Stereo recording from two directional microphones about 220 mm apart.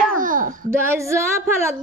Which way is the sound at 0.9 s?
15° right (ahead or behind).